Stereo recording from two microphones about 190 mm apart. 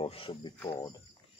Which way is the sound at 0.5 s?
20° left (ahead or behind).